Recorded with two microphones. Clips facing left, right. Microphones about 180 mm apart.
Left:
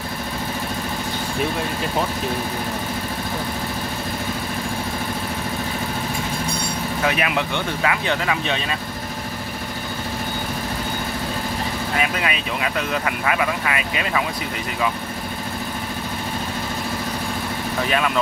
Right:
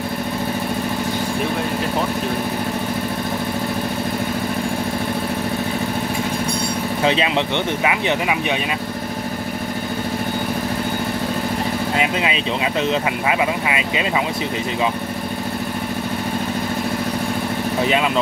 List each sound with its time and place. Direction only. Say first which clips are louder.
7.0 s speech: right 3 dB; 25° right (ahead or behind)
11.9 s speech: right 2 dB; 20° right (ahead or behind)
17.8 s speech: right 2 dB; 20° right (ahead or behind)